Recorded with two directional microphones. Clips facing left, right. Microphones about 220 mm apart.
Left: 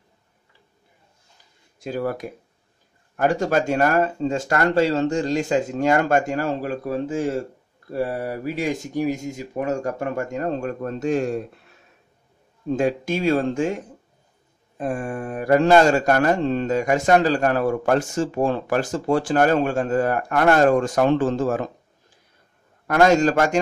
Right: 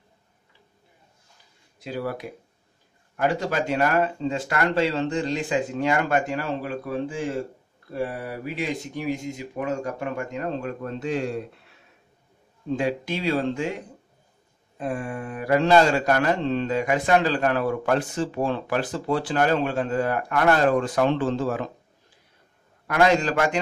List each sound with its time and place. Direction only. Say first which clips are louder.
1.8 s speech: left 4 dB; 45° left (ahead or behind)
12.7 s speech: left 4 dB; 45° left (ahead or behind)
14.8 s speech: left 3 dB; 45° left (ahead or behind)
22.8 s speech: left 4 dB; 45° left (ahead or behind)